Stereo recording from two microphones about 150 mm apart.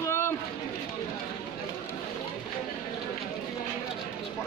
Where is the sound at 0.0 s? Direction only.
20° left (ahead or behind).